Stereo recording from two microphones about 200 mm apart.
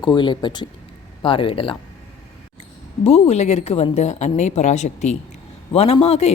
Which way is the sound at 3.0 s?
30° left (ahead or behind).